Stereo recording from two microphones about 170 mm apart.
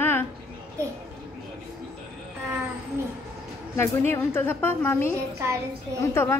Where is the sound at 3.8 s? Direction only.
15° left (ahead or behind).